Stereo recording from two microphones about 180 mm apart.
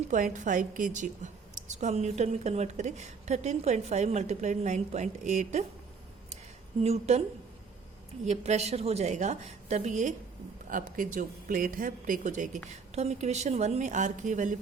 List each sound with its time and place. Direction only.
0.1 s a woman's voice: 45° right (ahead or behind)
6.8 s a woman's voice: 35° right (ahead or behind)
8.2 s a woman's voice: 40° right (ahead or behind)